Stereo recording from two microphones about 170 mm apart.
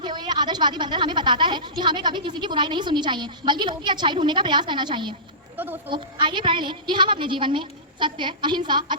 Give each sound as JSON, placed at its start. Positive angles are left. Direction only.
{"t": 0.0, "sound": "a woman's voice", "side_deg": -25}